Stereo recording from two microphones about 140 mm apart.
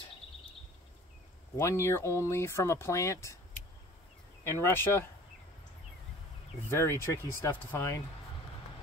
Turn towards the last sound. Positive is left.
turn(degrees=20)  # may be behind; listen again after turning